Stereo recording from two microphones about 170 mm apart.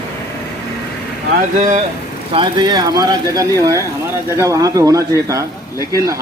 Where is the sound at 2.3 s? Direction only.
30° right (ahead or behind).